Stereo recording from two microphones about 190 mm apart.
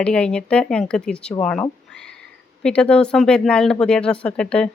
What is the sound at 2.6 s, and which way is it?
Speech, 5° left (ahead or behind).